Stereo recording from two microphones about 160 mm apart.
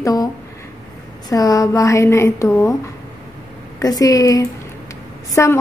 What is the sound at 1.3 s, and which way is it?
A woman's voice, 20° left (ahead or behind).